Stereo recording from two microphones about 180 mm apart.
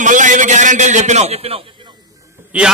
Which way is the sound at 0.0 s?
45° right (ahead or behind).